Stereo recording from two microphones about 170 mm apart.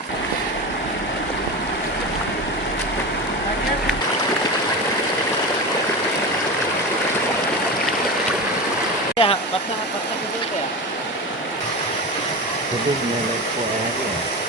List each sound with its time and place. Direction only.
9.1 s waterfall: 35° left (ahead or behind)